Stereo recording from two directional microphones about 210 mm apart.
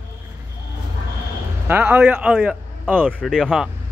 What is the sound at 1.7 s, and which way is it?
Speech, 10° right (ahead or behind).